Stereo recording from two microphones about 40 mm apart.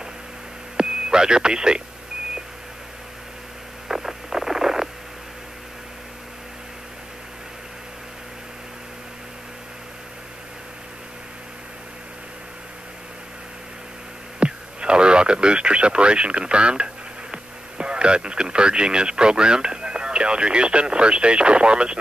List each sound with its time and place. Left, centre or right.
0.7 s radio: centre
3.9 s rodents: centre
14.4 s speech: right